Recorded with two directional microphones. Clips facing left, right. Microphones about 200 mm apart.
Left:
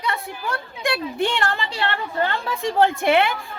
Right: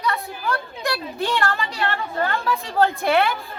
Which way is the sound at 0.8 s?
25° left (ahead or behind).